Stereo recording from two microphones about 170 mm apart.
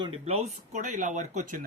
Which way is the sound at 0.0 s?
35° right (ahead or behind).